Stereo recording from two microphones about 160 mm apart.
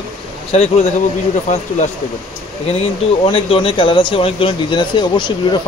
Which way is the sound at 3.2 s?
35° left (ahead or behind).